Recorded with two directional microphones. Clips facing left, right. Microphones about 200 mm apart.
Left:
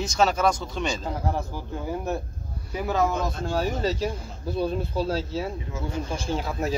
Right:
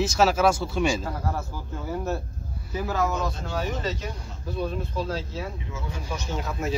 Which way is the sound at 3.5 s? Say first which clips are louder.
Left 6 dB; 30° left (ahead or behind).